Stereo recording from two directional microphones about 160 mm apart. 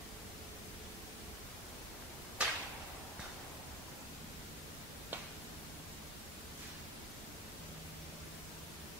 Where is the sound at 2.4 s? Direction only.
5° right (ahead or behind).